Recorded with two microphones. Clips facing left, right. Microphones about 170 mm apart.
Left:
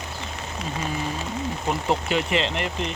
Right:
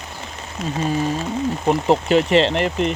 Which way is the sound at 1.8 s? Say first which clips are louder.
Right 8 dB; 40° right (ahead or behind).